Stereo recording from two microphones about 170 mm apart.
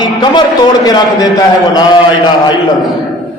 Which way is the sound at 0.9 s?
20° left (ahead or behind).